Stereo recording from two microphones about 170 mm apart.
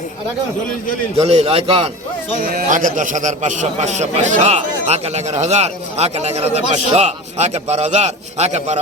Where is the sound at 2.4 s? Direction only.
55° right (ahead or behind).